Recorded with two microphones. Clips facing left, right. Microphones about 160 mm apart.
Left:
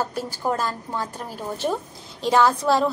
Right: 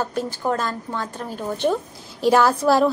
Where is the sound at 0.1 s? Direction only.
10° left (ahead or behind).